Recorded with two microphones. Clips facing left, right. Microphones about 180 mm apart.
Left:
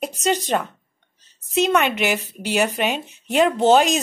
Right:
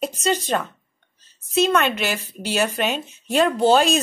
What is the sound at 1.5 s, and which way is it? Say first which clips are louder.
Speech: even; 15° left (ahead or behind).